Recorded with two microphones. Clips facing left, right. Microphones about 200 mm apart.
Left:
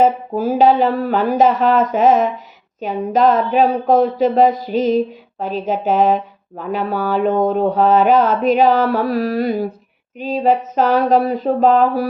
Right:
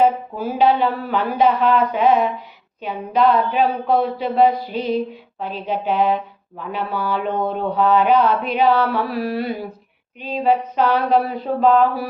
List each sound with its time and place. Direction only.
0.0 s speech: 45° left (ahead or behind)